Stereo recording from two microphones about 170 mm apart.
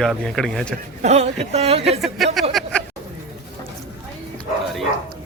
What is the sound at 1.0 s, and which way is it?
Speech, 40° right (ahead or behind).